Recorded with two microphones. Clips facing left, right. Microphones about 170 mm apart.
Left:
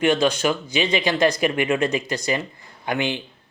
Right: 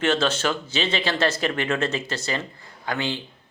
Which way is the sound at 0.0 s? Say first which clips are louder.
Left 3 dB; 15° left (ahead or behind).